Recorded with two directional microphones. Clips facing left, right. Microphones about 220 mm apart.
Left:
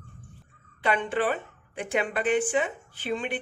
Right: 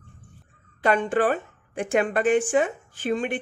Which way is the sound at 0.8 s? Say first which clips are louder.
Right 5 dB; 45° right (ahead or behind).